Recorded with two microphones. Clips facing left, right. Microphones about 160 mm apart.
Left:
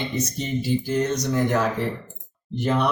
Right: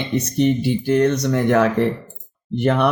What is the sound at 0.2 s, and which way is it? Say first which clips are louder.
Speech: right 8 dB; 65° right (ahead or behind).